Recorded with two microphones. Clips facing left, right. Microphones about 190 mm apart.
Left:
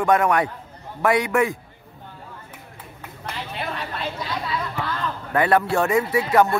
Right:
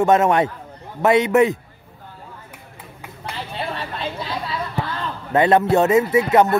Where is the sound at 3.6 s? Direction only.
30° right (ahead or behind).